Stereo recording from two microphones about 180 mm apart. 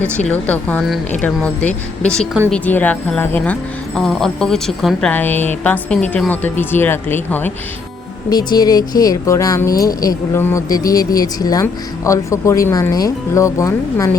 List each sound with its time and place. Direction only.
0.3 s a woman's voice: 10° left (ahead or behind)
8.3 s a woman's voice: 20° left (ahead or behind)